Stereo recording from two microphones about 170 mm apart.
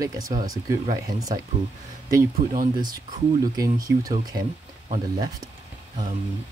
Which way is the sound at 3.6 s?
20° right (ahead or behind).